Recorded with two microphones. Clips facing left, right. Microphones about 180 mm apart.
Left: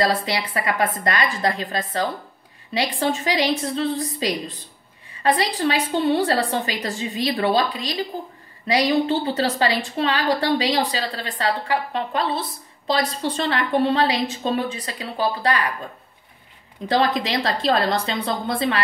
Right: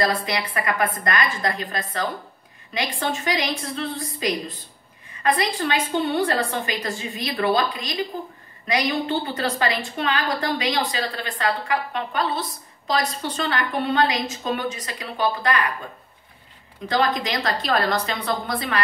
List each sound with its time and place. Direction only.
0.0 s a woman's voice: 30° left (ahead or behind)
16.8 s a woman's voice: 30° left (ahead or behind)